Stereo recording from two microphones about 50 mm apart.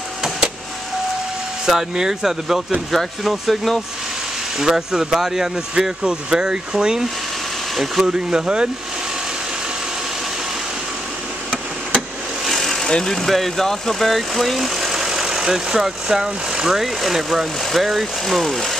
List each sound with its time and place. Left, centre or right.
1.7 s speech: centre
4.6 s speech: centre
8.1 s speech: centre
12.4 s speech: centre